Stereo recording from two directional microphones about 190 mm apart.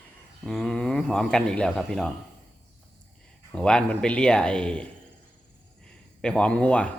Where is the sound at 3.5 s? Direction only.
5° left (ahead or behind).